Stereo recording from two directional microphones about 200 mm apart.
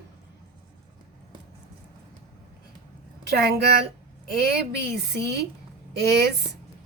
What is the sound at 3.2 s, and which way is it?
Speech, 55° right (ahead or behind).